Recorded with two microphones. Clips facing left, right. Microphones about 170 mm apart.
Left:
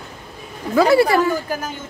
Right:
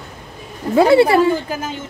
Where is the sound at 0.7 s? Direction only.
25° right (ahead or behind).